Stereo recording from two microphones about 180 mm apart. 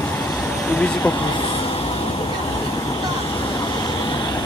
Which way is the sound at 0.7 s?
10° left (ahead or behind).